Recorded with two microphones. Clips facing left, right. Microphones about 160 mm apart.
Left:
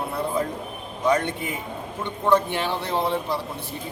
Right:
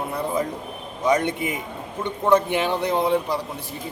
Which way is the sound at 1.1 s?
15° right (ahead or behind).